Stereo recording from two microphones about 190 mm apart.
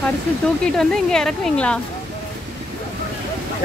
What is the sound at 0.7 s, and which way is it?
Speech, centre (ahead or behind).